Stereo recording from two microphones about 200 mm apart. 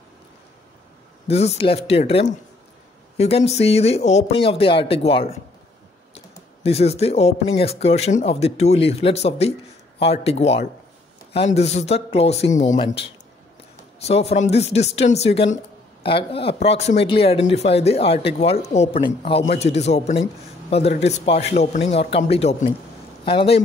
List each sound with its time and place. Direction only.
1.2 s speech: 30° left (ahead or behind)